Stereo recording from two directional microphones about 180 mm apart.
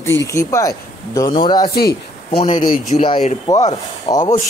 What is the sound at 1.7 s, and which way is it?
Speech, 60° left (ahead or behind).